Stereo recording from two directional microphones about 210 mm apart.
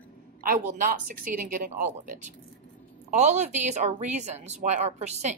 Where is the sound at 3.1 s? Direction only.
35° right (ahead or behind).